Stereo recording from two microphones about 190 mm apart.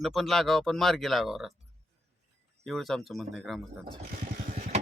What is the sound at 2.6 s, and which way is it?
Speech, centre (ahead or behind).